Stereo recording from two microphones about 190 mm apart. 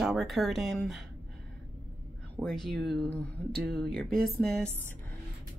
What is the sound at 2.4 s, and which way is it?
Speech, centre (ahead or behind).